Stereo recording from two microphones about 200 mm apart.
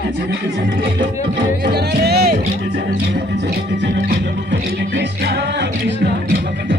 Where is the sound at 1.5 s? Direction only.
55° right (ahead or behind).